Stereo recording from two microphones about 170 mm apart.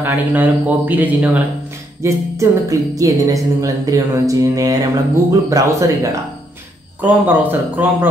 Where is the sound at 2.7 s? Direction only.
20° right (ahead or behind).